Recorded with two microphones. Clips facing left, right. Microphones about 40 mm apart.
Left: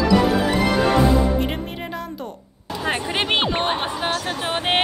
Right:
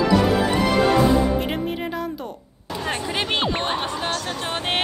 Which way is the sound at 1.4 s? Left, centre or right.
Centre.